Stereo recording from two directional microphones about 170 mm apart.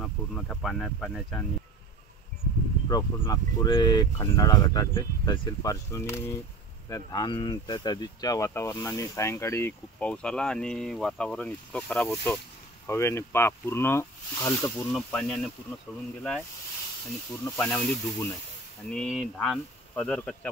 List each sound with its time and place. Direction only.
0.0 s speech: 5° left (ahead or behind)
2.9 s speech: 20° left (ahead or behind); by 12.4 s 5° left (ahead or behind)
12.8 s speech: 15° left (ahead or behind)
15.0 s speech: 5° left (ahead or behind)
17.5 s speech: 5° left (ahead or behind)